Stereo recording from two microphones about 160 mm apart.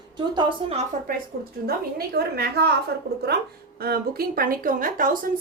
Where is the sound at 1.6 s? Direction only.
75° right (ahead or behind).